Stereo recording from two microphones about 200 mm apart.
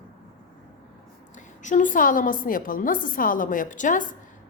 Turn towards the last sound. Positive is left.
turn(degrees=40)  # may be behind; listen again after turning